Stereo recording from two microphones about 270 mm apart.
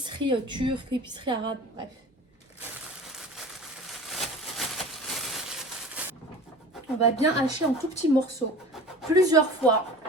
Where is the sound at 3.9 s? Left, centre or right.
Centre.